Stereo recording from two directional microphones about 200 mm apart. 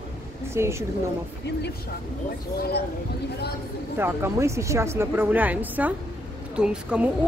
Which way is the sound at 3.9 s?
10° right (ahead or behind).